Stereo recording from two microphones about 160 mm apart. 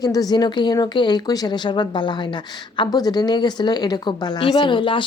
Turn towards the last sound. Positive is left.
turn(degrees=30)  # may be behind; listen again after turning